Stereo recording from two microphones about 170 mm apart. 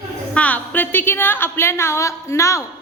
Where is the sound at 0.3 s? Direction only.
10° left (ahead or behind).